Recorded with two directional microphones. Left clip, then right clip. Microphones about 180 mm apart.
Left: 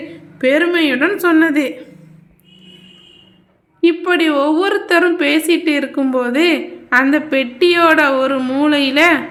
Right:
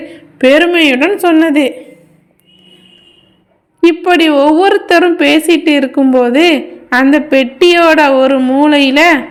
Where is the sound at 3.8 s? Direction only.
35° right (ahead or behind).